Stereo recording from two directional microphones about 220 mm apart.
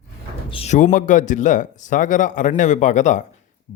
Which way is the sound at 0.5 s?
30° left (ahead or behind).